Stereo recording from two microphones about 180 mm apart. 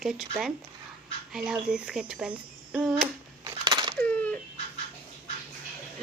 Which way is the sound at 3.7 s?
25° right (ahead or behind).